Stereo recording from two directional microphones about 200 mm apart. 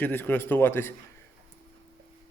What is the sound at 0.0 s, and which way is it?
Speech, 10° left (ahead or behind).